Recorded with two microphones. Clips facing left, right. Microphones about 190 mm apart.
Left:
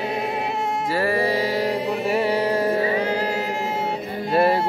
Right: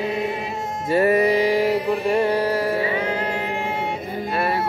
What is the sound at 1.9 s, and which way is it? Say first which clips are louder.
Carnatic music: right 2 dB; centre (ahead or behind).